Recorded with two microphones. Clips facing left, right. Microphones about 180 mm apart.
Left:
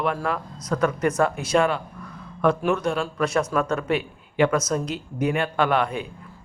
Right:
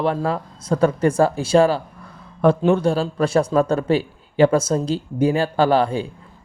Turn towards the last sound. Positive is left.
turn(degrees=-30)  # may be behind; listen again after turning